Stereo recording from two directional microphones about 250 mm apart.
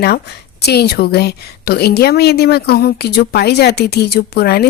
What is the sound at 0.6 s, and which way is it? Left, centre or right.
A woman's voice, left.